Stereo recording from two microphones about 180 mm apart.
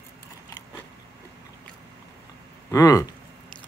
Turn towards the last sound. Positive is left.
turn(degrees=20)  # may be behind; listen again after turning